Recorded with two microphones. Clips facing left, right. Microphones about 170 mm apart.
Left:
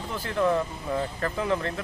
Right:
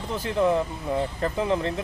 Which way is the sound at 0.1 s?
20° right (ahead or behind).